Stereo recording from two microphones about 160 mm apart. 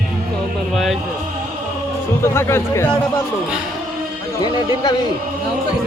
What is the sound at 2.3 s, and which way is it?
Speech, 15° left (ahead or behind).